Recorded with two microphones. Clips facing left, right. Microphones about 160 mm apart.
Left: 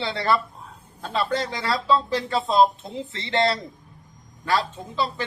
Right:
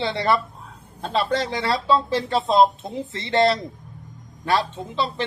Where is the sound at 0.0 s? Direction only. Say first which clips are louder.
Right 2 dB; 20° right (ahead or behind).